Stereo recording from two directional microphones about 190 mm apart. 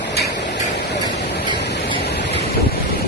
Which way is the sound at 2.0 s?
65° left (ahead or behind).